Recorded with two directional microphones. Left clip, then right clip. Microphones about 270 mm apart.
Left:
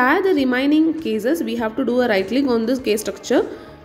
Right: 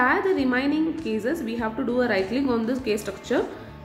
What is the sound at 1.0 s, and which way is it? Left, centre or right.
A woman's voice, left.